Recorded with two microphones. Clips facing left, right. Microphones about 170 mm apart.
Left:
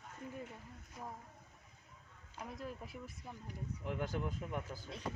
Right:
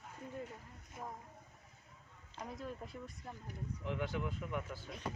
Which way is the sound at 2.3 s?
Centre (ahead or behind).